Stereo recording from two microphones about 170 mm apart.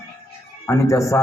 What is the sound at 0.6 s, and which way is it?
Speech, 15° left (ahead or behind).